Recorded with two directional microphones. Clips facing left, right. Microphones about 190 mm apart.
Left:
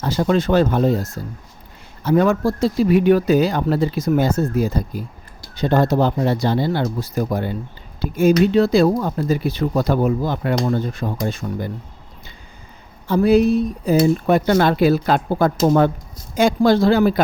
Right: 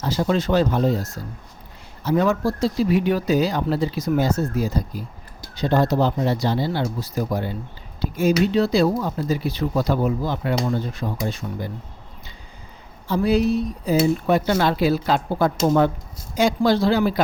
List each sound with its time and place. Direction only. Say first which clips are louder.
0.0 s speech: left 3 dB; 55° left (ahead or behind)
8.5 s speech: left 4 dB; 50° left (ahead or behind)
13.1 s speech: left 5 dB; 50° left (ahead or behind)